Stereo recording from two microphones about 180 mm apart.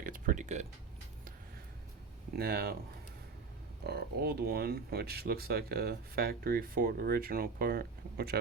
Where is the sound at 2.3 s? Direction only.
60° right (ahead or behind).